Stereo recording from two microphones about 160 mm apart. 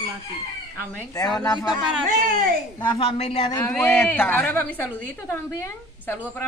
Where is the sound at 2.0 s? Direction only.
60° right (ahead or behind).